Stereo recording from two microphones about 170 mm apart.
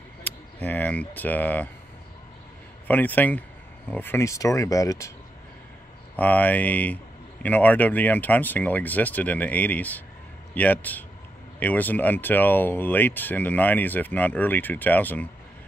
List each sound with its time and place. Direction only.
0.2 s speech: 10° left (ahead or behind)
2.9 s speech: 10° left (ahead or behind)
6.1 s speech: 10° left (ahead or behind)